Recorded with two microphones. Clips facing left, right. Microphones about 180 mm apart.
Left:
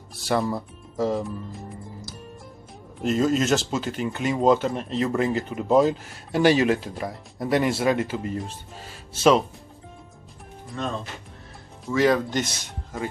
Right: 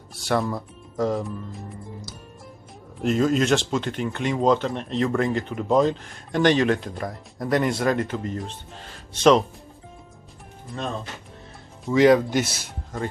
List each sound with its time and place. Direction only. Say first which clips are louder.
0.1 s speech: even; centre (ahead or behind)
11.9 s speech: right 4 dB; 15° right (ahead or behind)